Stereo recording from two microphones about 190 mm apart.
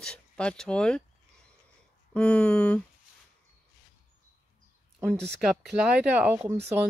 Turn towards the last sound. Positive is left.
turn(degrees=-10)  # may be behind; listen again after turning